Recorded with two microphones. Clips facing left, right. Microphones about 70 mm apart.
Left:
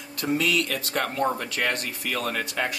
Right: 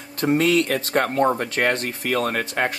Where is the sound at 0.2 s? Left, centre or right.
Right.